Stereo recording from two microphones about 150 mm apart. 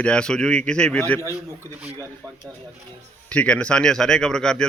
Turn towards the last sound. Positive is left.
turn(degrees=5)  # may be behind; listen again after turning